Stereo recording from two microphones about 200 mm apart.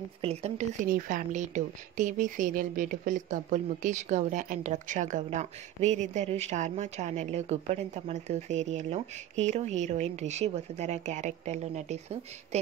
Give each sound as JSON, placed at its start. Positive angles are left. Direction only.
{"t": 0.2, "sound": "a woman's voice", "side_deg": -30}